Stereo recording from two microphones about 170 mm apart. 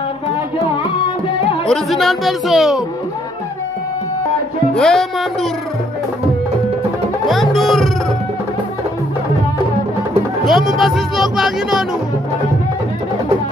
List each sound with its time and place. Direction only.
1.7 s speech: centre (ahead or behind)
4.7 s speech: centre (ahead or behind)
7.2 s music: centre (ahead or behind)
10.4 s speech: centre (ahead or behind)